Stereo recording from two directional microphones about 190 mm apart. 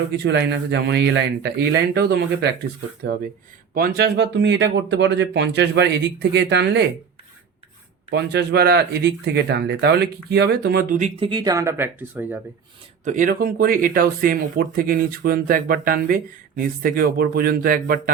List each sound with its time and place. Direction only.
0.2 s speech: 65° right (ahead or behind)
3.8 s speech: 55° right (ahead or behind)
8.1 s speech: 60° right (ahead or behind); by 11.1 s 45° right (ahead or behind)
11.2 s speech: 25° right (ahead or behind); by 12.4 s 10° right (ahead or behind)
13.1 s speech: 45° right (ahead or behind)